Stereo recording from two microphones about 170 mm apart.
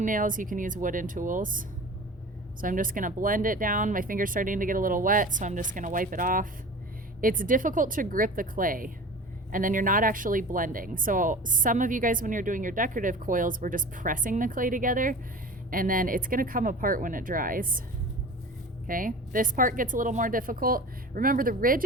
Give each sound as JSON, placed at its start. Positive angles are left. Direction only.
{"t": 0.0, "sound": "a woman's voice", "side_deg": -50}
{"t": 18.9, "sound": "a woman's voice", "side_deg": -55}